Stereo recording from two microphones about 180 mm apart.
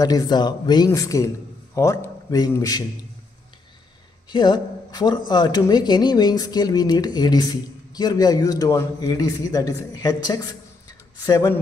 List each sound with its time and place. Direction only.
0.0 s a man's voice: 20° left (ahead or behind)
4.3 s speech: 25° left (ahead or behind)